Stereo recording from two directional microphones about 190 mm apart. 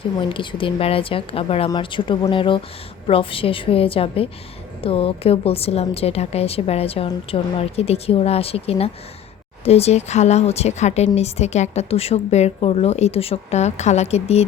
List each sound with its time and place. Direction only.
0.2 s a woman's voice: 25° left (ahead or behind)